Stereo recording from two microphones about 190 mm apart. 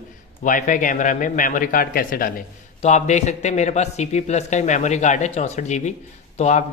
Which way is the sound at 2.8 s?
40° left (ahead or behind).